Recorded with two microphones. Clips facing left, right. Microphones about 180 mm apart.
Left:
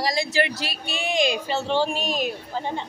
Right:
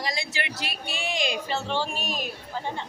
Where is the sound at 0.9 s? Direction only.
20° left (ahead or behind).